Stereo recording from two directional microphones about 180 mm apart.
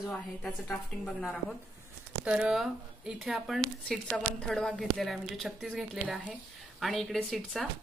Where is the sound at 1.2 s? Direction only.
5° left (ahead or behind).